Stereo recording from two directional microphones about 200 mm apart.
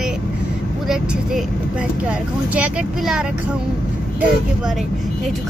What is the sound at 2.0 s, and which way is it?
Speech, 5° right (ahead or behind).